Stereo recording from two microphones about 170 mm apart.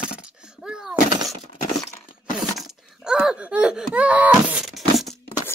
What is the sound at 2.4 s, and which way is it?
Laughter, 5° right (ahead or behind).